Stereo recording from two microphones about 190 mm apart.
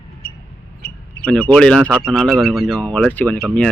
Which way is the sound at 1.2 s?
5° left (ahead or behind).